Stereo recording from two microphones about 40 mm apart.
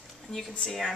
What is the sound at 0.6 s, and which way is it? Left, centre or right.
Speech, centre.